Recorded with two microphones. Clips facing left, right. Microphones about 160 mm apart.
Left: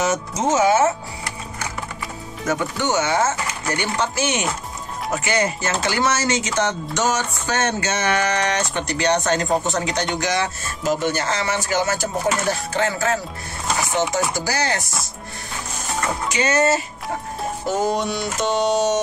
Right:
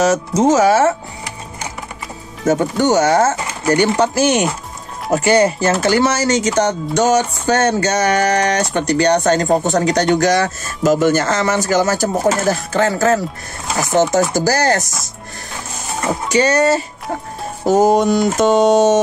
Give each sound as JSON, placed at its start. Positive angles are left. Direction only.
{"t": 0.3, "sound": "speech", "side_deg": -35}
{"t": 2.4, "sound": "speech", "side_deg": -35}
{"t": 16.3, "sound": "speech", "side_deg": -35}
{"t": 17.6, "sound": "music", "side_deg": -45}